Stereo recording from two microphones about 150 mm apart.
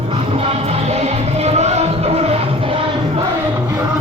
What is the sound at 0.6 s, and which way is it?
Music, 45° right (ahead or behind).